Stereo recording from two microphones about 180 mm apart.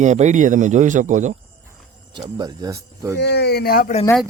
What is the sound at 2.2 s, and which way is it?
Speech, 25° right (ahead or behind).